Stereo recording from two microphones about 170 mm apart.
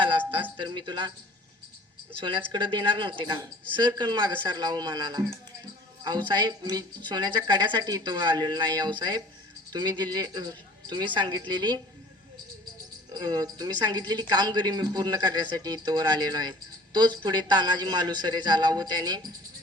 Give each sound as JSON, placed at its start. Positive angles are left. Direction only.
{"t": 0.5, "sound": "a man's voice", "side_deg": -25}
{"t": 2.5, "sound": "a man's voice", "side_deg": -30}
{"t": 13.1, "sound": "a man's voice", "side_deg": -20}